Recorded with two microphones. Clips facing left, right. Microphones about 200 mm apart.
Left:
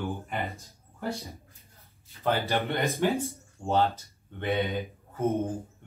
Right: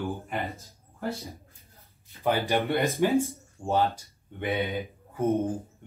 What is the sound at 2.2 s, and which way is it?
A man's voice, 15° right (ahead or behind).